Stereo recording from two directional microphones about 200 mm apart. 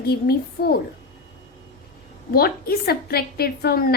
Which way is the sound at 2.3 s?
50° left (ahead or behind).